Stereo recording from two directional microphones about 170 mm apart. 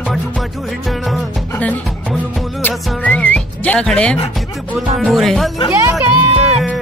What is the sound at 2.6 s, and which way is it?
Music, 10° left (ahead or behind).